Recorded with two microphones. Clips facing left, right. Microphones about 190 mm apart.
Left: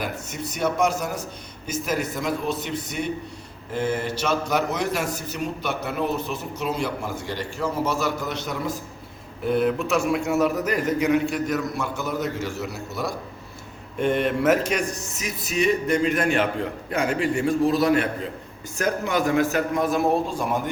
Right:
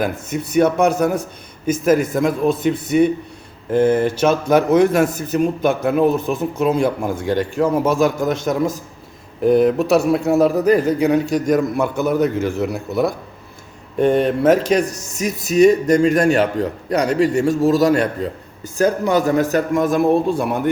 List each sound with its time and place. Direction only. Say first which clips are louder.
0.0 s a man's voice: right 8 dB; 55° right (ahead or behind)
3.7 s a man's voice: right 10 dB; 55° right (ahead or behind)
14.0 s speech: right 7 dB; 35° right (ahead or behind)
19.8 s speech: right 6 dB; 50° right (ahead or behind)